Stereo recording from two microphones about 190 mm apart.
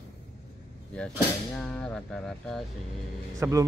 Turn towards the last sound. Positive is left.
turn(degrees=-15)  # may be behind; listen again after turning